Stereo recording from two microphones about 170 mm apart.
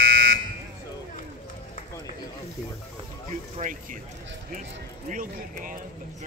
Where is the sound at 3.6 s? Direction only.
50° right (ahead or behind).